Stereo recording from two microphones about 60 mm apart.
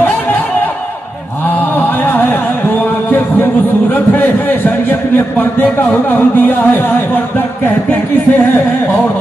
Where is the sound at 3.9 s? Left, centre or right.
Left.